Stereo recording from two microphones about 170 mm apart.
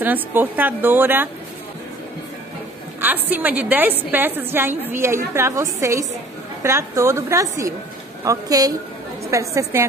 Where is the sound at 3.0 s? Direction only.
10° right (ahead or behind).